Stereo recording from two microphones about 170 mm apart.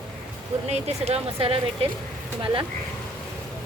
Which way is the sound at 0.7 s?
40° right (ahead or behind).